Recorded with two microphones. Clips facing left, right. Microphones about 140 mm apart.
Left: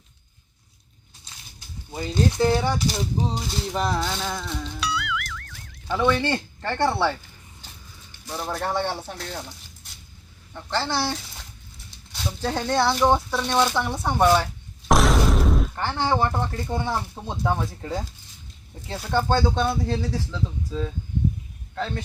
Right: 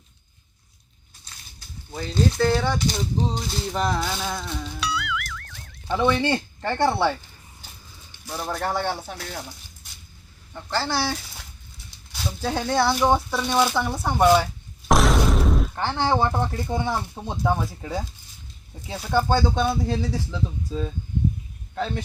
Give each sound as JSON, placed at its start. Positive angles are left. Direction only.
{"t": 1.5, "sound": "speech", "side_deg": 15}
{"t": 5.9, "sound": "speech", "side_deg": -15}
{"t": 8.3, "sound": "speech", "side_deg": 0}
{"t": 14.8, "sound": "a sound", "side_deg": 0}
{"t": 15.8, "sound": "speech", "side_deg": -15}